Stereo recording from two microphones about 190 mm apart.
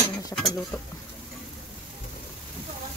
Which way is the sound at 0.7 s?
15° left (ahead or behind).